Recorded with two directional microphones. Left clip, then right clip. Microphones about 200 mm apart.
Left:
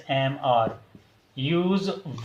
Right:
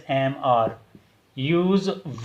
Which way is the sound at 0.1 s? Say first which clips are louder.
Right 2 dB; 40° right (ahead or behind).